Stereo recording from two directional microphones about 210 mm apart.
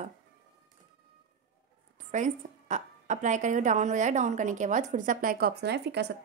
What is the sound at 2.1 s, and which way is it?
A woman's voice, 35° right (ahead or behind).